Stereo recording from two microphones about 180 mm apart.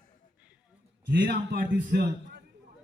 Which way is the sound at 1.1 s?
55° right (ahead or behind).